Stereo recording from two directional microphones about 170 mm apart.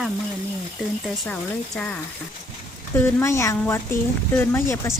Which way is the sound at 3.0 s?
15° left (ahead or behind).